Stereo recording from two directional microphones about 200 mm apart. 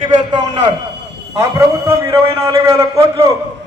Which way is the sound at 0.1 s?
20° right (ahead or behind).